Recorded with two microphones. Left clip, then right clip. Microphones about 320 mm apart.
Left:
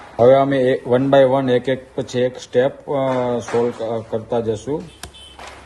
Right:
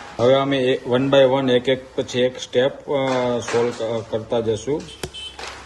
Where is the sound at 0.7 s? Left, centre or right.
Left.